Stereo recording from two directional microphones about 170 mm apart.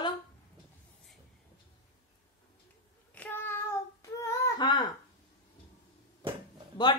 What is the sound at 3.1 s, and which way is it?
Child singing, 10° left (ahead or behind).